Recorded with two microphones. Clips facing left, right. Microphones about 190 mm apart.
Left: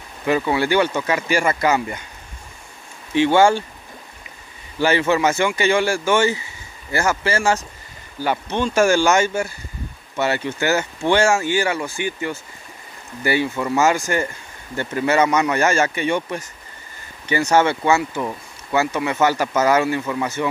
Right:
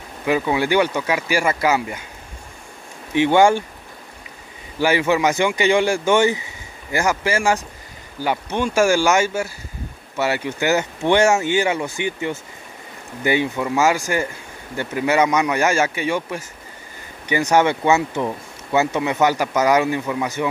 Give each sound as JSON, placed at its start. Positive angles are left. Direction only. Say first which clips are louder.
{"t": 0.2, "sound": "speech", "louder": "even", "side_deg": -15}
{"t": 3.1, "sound": "speech", "louder": "even", "side_deg": -15}
{"t": 4.7, "sound": "speech", "louder": "even", "side_deg": -10}